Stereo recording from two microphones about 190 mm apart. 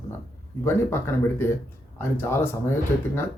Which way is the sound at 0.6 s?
15° left (ahead or behind).